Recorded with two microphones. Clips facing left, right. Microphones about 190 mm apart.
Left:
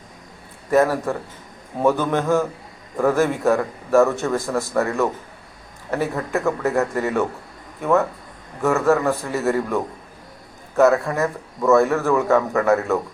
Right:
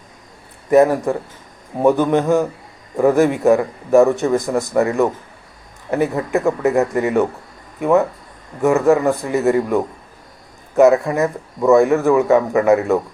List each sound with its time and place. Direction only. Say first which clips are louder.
0.7 s a man's voice: right 5 dB; 20° right (ahead or behind)